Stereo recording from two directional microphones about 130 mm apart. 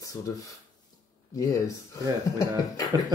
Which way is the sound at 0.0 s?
25° left (ahead or behind).